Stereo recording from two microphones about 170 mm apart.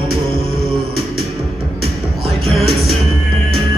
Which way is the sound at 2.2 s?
Centre (ahead or behind).